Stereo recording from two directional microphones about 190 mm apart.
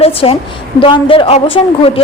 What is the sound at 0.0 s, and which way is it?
A woman's voice, 30° left (ahead or behind).